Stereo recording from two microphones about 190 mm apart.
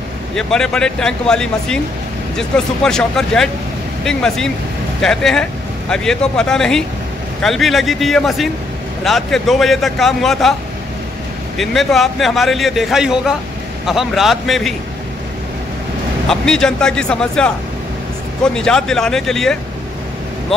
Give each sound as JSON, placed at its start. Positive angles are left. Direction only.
{"t": 0.3, "sound": "a man's voice", "side_deg": 5}
{"t": 11.5, "sound": "a man's voice", "side_deg": 0}
{"t": 16.3, "sound": "a man's voice", "side_deg": 5}